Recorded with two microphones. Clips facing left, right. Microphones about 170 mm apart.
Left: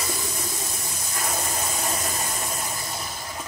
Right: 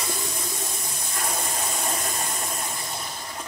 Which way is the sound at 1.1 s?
Centre (ahead or behind).